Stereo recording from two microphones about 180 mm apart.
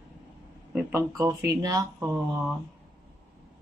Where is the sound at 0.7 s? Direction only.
10° right (ahead or behind).